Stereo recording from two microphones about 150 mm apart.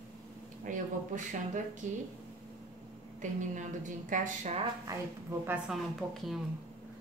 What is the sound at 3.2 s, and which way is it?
A woman's voice, 55° right (ahead or behind).